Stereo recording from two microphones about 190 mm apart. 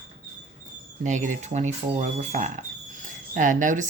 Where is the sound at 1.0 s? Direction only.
40° right (ahead or behind).